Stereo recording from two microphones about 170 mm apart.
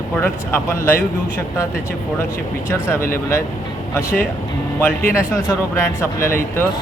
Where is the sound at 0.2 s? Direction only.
15° left (ahead or behind).